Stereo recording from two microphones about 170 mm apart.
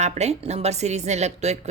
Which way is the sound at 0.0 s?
40° right (ahead or behind).